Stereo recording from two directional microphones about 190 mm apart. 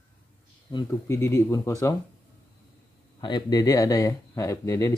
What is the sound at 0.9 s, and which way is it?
Speech, 15° left (ahead or behind).